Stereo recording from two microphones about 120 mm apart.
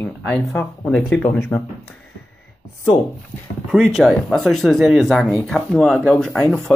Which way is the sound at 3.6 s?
5° right (ahead or behind).